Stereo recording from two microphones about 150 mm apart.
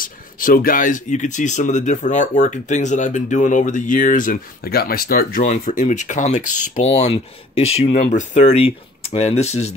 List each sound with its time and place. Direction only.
0.0 s speech: 70° left (ahead or behind); by 9.8 s 45° left (ahead or behind)